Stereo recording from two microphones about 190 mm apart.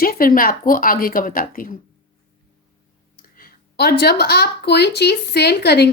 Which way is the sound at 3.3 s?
55° left (ahead or behind).